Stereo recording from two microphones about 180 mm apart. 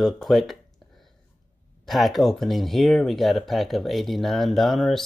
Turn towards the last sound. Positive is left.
turn(degrees=0)  # may be behind; listen again after turning